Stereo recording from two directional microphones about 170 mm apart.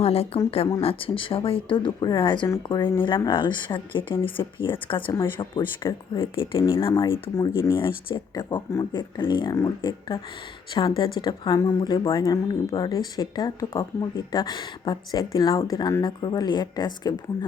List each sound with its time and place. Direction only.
0.0 s speech: 35° left (ahead or behind)